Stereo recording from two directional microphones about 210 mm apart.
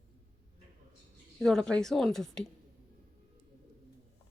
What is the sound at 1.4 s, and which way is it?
Speech, centre (ahead or behind).